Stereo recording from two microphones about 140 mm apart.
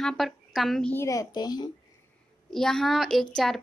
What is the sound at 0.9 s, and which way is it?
Speech, 25° left (ahead or behind).